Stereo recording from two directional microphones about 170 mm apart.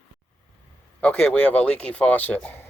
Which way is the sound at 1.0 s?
5° left (ahead or behind).